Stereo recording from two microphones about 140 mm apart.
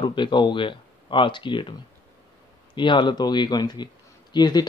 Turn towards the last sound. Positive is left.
turn(degrees=30)  # may be behind; listen again after turning